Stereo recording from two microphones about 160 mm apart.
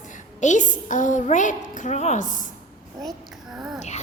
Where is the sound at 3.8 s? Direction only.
45° left (ahead or behind).